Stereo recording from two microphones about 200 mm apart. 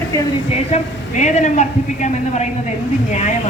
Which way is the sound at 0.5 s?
35° left (ahead or behind).